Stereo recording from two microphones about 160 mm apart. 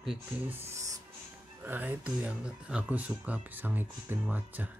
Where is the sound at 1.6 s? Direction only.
10° right (ahead or behind).